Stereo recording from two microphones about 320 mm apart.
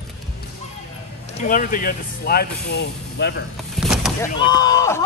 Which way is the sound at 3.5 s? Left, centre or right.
Centre.